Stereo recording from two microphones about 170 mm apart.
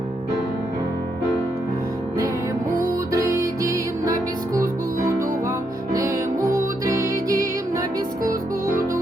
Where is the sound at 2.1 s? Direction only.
20° right (ahead or behind).